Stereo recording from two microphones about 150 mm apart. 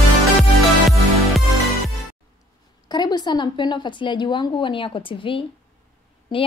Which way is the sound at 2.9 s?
30° left (ahead or behind).